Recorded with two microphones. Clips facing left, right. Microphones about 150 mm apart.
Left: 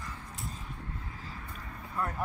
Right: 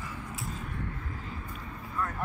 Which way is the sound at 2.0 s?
30° left (ahead or behind).